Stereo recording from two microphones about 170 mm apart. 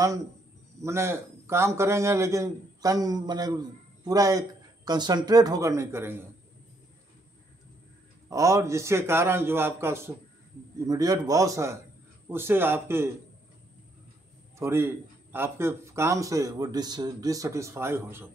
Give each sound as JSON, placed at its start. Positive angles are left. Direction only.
{"t": 0.8, "sound": "a man's voice", "side_deg": -15}
{"t": 8.3, "sound": "a man's voice", "side_deg": -20}
{"t": 14.6, "sound": "a man's voice", "side_deg": -15}